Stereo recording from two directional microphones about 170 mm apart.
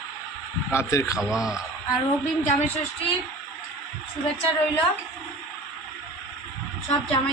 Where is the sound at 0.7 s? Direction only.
15° left (ahead or behind).